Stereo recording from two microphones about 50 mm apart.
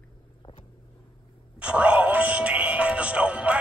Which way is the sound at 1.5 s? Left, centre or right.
Right.